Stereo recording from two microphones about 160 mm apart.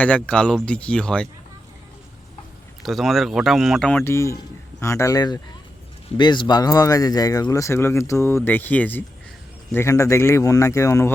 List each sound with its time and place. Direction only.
0.0 s speech: 5° left (ahead or behind)
2.8 s speech: centre (ahead or behind); by 11.1 s 20° left (ahead or behind)